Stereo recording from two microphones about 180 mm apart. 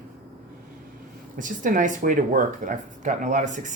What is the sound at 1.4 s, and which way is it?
Speech, 45° right (ahead or behind).